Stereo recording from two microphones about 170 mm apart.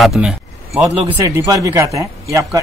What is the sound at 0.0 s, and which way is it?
Speech, centre (ahead or behind).